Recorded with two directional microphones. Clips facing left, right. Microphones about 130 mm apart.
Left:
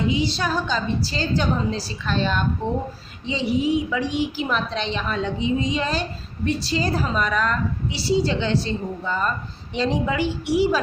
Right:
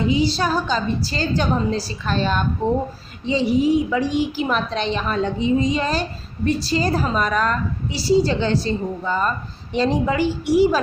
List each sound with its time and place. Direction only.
0.1 s a woman's voice: 35° right (ahead or behind)